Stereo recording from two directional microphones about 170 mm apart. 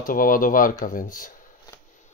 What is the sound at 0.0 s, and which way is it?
Speech, 55° left (ahead or behind).